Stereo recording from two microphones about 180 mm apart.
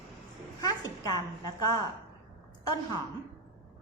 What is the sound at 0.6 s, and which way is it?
Speech, 20° left (ahead or behind).